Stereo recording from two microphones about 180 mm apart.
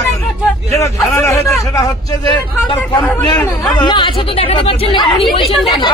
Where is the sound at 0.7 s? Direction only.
15° left (ahead or behind).